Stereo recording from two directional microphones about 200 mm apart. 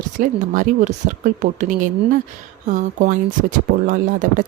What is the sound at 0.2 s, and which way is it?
Speech, 45° right (ahead or behind).